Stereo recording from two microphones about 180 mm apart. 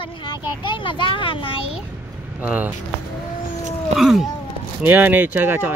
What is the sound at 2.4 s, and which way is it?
Speech, 10° right (ahead or behind).